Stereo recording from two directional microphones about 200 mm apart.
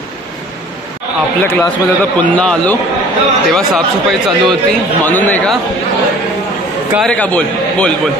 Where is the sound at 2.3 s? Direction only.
5° left (ahead or behind).